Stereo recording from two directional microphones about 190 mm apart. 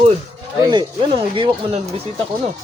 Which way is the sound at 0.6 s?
20° right (ahead or behind).